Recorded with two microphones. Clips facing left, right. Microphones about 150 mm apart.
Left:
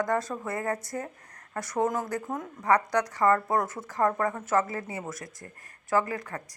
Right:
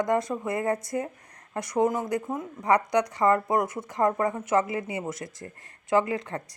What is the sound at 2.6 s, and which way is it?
Speech, 15° right (ahead or behind).